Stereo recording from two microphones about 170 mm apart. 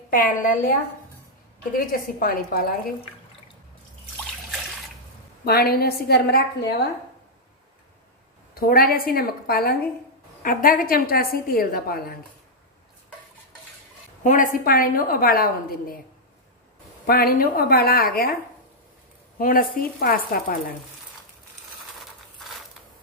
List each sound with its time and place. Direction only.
0.1 s a woman's voice: 55° left (ahead or behind)
1.9 s a woman's voice: 60° left (ahead or behind)
5.4 s a woman's voice: 65° left (ahead or behind)
8.5 s a woman's voice: 60° left (ahead or behind)
14.2 s a woman's voice: 50° left (ahead or behind)
17.0 s a woman's voice: 65° left (ahead or behind)
19.3 s a woman's voice: 55° left (ahead or behind)